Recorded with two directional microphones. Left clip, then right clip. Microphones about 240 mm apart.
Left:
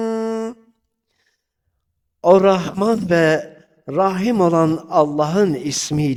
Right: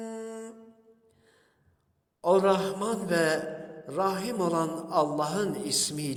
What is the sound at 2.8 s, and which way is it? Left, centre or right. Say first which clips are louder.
A man's voice: left 11 dB; left.